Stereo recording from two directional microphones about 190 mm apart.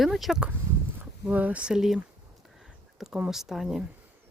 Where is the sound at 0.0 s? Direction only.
Centre (ahead or behind).